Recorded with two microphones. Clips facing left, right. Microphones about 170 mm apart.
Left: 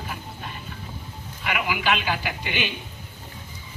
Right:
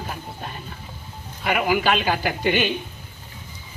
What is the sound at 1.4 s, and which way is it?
A woman's voice, 40° right (ahead or behind).